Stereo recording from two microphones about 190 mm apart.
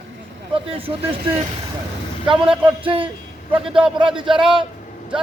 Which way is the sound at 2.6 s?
30° right (ahead or behind).